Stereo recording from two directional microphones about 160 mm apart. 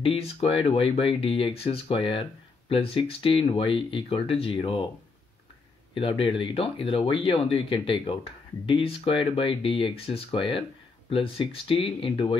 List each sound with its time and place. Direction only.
0.0 s speech: 40° left (ahead or behind)
5.9 s speech: 35° left (ahead or behind)